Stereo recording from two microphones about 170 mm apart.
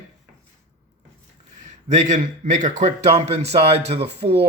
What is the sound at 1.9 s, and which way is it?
A man's voice, 45° right (ahead or behind).